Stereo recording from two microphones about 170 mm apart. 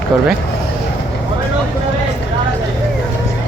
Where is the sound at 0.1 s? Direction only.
Centre (ahead or behind).